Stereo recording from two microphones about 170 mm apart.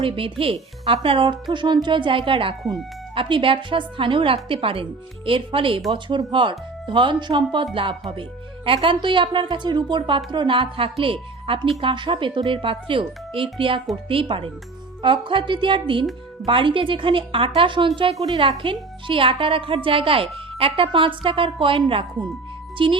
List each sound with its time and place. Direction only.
0.0 s a woman's voice: 30° right (ahead or behind)